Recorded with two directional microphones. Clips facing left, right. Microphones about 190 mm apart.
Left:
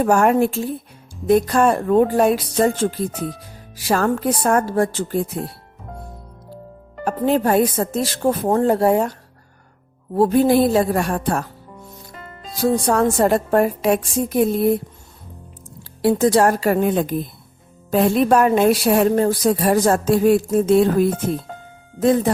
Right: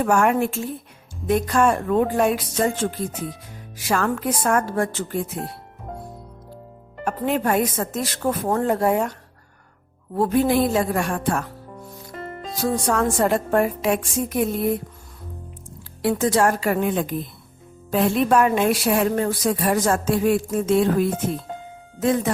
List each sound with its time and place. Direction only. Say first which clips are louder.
0.0 s a woman's voice: left 4 dB; 35° left (ahead or behind)
7.0 s a woman's voice: left 4 dB; 35° left (ahead or behind)
10.2 s a woman's voice: left 4 dB; 35° left (ahead or behind)
12.6 s a woman's voice: left 4 dB; 35° left (ahead or behind)
16.0 s a woman's voice: left 4 dB; 35° left (ahead or behind)